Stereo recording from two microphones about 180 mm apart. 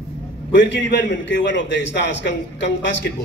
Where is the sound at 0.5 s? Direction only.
85° left.